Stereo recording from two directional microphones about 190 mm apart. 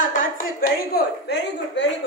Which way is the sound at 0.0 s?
45° left (ahead or behind).